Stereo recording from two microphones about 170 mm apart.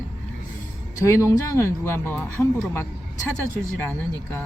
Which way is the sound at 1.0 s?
15° left (ahead or behind).